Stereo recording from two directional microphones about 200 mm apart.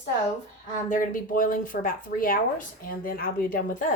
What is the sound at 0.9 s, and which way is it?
Speech, 40° left (ahead or behind).